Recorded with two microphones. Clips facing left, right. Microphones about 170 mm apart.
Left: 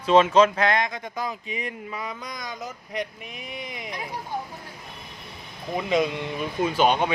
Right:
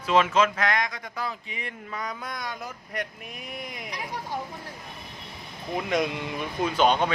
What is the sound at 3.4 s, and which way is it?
Speech, centre (ahead or behind).